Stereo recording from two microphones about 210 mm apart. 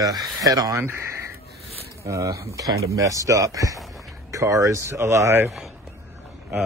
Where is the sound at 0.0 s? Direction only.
15° right (ahead or behind).